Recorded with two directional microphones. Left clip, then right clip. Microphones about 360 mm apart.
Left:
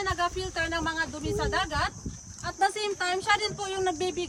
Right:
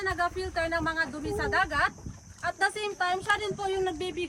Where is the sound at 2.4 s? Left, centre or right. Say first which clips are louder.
Left 1 dB; right.